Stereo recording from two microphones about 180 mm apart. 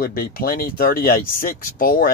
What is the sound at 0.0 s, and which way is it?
Speech, 55° left (ahead or behind).